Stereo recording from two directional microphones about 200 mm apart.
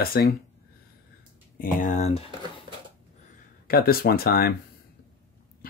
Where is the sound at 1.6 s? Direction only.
35° left (ahead or behind).